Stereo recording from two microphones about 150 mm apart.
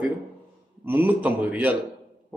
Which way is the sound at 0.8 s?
10° right (ahead or behind).